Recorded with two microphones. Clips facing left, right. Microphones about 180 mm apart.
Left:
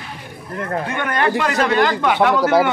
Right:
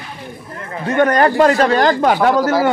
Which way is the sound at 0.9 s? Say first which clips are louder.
Right 9 dB; 40° right (ahead or behind).